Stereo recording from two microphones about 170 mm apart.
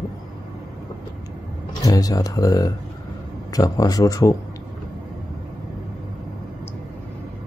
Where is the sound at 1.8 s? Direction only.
20° left (ahead or behind).